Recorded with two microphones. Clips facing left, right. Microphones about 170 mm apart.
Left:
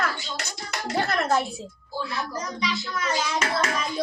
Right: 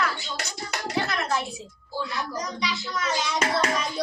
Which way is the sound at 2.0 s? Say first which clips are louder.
Even; centre (ahead or behind).